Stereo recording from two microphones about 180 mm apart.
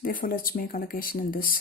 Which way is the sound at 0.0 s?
50° left (ahead or behind).